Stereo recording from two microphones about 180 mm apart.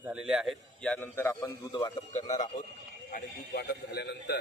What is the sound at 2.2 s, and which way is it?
Speech, 40° left (ahead or behind).